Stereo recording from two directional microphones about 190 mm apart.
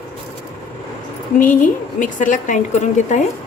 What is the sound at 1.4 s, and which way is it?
Speech, 45° left (ahead or behind).